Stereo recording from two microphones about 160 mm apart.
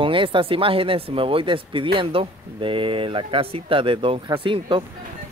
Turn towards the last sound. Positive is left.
turn(degrees=-30)  # may be behind; listen again after turning